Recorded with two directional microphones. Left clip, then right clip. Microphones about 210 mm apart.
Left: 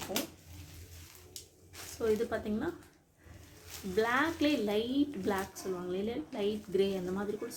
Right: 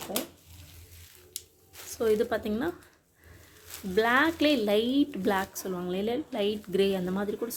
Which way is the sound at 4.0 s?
50° right (ahead or behind).